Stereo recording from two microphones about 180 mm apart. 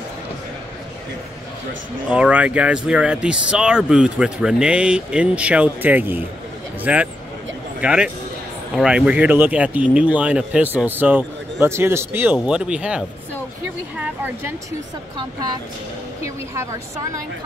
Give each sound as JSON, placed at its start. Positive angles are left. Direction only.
{"t": 2.0, "sound": "speech", "side_deg": -5}
{"t": 16.2, "sound": "speech", "side_deg": -20}